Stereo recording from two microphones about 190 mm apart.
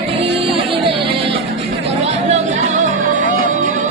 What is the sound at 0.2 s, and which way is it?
Music, 30° right (ahead or behind).